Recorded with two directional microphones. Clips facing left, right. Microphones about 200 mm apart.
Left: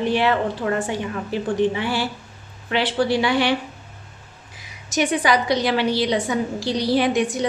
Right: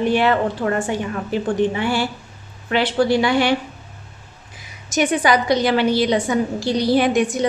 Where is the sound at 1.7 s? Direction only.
50° right (ahead or behind).